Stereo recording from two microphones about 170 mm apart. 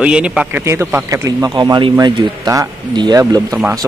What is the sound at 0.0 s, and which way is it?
Speech, 5° right (ahead or behind).